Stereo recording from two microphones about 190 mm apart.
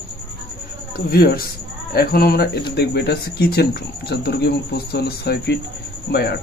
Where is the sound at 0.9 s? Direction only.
55° left (ahead or behind).